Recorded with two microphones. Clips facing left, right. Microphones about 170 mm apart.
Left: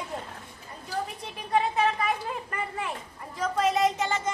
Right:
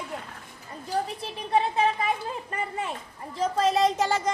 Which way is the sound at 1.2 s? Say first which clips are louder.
Left 1 dB; 30° right (ahead or behind).